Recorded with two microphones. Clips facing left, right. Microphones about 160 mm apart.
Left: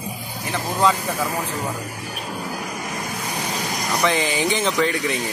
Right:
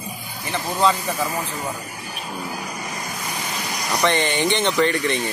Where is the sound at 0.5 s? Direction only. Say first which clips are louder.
Even; centre (ahead or behind).